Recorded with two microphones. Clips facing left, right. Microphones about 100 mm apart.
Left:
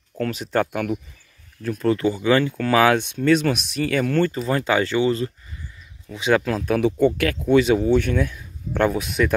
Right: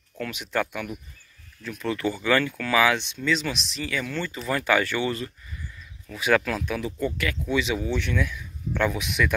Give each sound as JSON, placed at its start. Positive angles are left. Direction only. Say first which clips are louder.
{"t": 0.2, "sound": "speech", "louder": "left 6 dB", "side_deg": 40}
{"t": 2.0, "sound": "speech", "louder": "left 2 dB", "side_deg": 20}
{"t": 4.4, "sound": "speech", "louder": "left 3 dB", "side_deg": 30}
{"t": 6.8, "sound": "speech", "louder": "left 10 dB", "side_deg": 65}